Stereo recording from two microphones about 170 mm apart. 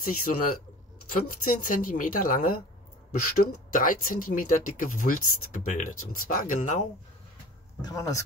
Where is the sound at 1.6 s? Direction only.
50° left (ahead or behind).